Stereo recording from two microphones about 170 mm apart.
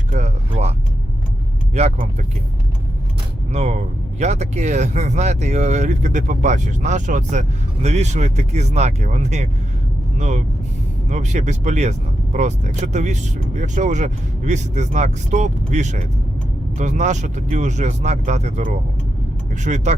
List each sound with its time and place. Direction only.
0.1 s speech: 45° right (ahead or behind)
3.5 s speech: 40° right (ahead or behind)